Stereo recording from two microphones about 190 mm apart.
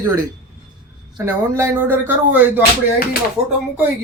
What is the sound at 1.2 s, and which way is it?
Speech, 15° right (ahead or behind).